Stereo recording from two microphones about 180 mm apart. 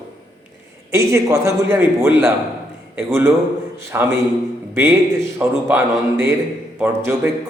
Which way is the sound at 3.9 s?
15° right (ahead or behind).